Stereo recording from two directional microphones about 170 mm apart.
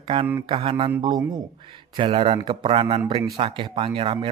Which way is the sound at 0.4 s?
35° right (ahead or behind).